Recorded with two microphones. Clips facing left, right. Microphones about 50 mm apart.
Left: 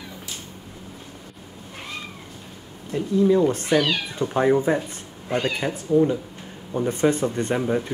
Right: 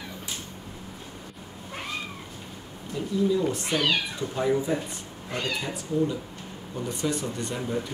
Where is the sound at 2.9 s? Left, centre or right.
Left.